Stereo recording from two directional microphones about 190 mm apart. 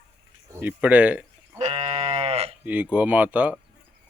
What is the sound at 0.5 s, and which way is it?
Speech, 10° right (ahead or behind).